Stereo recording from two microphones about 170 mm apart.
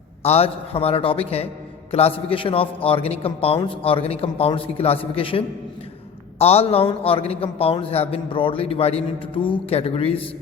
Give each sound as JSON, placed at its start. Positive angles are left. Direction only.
{"t": 0.2, "sound": "a man's voice", "side_deg": 35}
{"t": 6.4, "sound": "a man's voice", "side_deg": 35}